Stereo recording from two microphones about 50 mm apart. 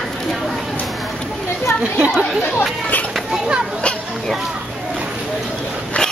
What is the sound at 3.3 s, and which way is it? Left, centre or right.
Speech, centre.